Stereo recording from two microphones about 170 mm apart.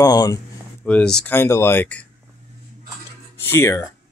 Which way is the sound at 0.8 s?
5° left (ahead or behind).